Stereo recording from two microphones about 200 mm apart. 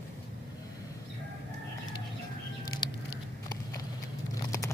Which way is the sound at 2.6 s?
20° left (ahead or behind).